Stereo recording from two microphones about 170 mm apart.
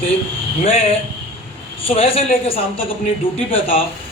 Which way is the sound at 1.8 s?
35° left (ahead or behind).